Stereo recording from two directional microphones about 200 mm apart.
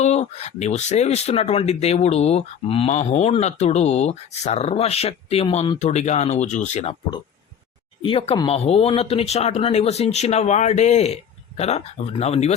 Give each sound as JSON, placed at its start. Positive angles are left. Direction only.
{"t": 0.0, "sound": "speech", "side_deg": 35}
{"t": 8.0, "sound": "speech", "side_deg": 25}